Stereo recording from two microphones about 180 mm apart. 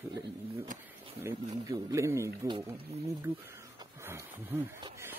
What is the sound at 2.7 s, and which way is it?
Speech, 35° right (ahead or behind).